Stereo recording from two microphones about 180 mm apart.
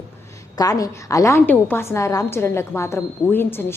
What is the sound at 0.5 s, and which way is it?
A woman's voice, 20° left (ahead or behind).